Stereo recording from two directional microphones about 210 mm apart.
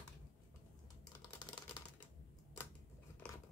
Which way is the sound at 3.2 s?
5° left (ahead or behind).